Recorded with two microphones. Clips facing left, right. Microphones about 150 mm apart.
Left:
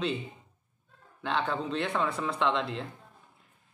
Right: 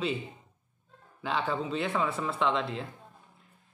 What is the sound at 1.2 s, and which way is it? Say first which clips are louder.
A man's voice: even; 5° right (ahead or behind).